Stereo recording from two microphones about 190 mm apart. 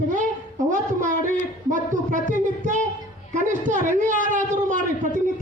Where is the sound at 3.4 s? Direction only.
45° right (ahead or behind).